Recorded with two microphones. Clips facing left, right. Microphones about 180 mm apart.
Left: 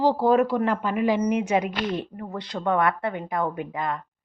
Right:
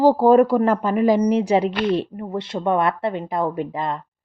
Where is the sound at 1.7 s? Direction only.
65° right (ahead or behind).